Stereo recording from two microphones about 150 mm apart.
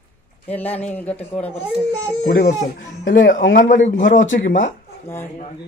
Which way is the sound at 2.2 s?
90° left.